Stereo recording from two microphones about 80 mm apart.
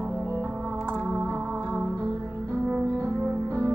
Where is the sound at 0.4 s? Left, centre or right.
Centre.